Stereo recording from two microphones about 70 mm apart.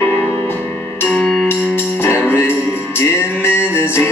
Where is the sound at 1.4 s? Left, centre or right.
Left.